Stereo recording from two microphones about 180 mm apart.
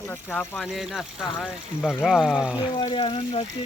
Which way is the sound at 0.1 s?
10° left (ahead or behind).